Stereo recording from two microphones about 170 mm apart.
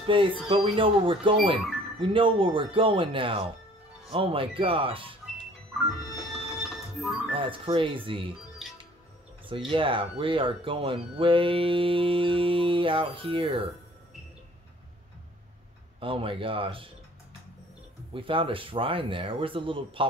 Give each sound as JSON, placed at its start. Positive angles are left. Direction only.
{"t": 0.0, "sound": "speech", "side_deg": -30}
{"t": 6.3, "sound": "music", "side_deg": 0}
{"t": 7.3, "sound": "speech", "side_deg": -30}
{"t": 8.6, "sound": "music", "side_deg": 0}
{"t": 9.5, "sound": "speech", "side_deg": -30}
{"t": 16.0, "sound": "speech", "side_deg": -30}
{"t": 18.1, "sound": "speech", "side_deg": -30}